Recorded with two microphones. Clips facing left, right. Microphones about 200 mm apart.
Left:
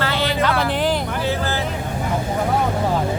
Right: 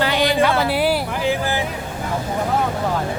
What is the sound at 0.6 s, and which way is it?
Music, 10° right (ahead or behind).